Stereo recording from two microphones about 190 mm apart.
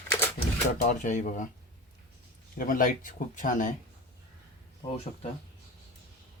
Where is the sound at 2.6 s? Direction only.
45° left (ahead or behind).